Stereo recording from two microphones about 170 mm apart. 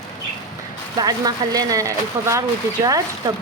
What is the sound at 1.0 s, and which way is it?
Speech, 20° right (ahead or behind).